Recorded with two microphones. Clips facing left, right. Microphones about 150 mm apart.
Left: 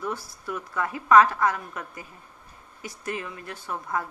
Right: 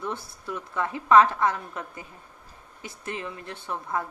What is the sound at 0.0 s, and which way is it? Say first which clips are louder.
A woman's voice: left 1 dB; 25° right (ahead or behind).